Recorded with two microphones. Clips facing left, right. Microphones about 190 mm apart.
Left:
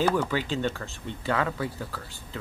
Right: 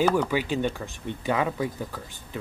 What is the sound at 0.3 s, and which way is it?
Speech, 15° right (ahead or behind).